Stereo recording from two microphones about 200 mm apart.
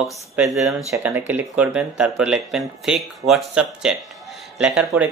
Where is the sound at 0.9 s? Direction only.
15° right (ahead or behind).